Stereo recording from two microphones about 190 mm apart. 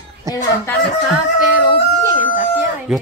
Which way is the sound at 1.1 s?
5° right (ahead or behind).